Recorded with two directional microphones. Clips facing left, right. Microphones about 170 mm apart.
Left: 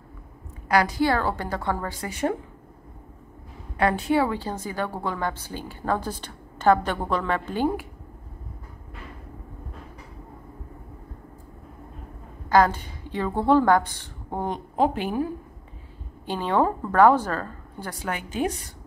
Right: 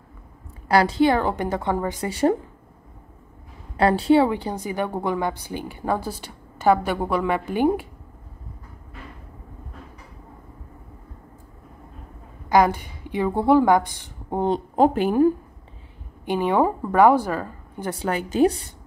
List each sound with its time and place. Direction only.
0.7 s a woman's voice: 30° right (ahead or behind)
2.0 s a woman's voice: 35° right (ahead or behind)
3.7 s a woman's voice: 30° right (ahead or behind); by 7.7 s 15° right (ahead or behind)
12.4 s a woman's voice: 15° right (ahead or behind)
14.8 s a woman's voice: 45° right (ahead or behind)
16.3 s a woman's voice: 15° right (ahead or behind)
17.8 s a woman's voice: 30° right (ahead or behind)